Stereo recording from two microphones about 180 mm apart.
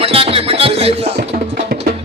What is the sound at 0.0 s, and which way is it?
Music, 30° right (ahead or behind).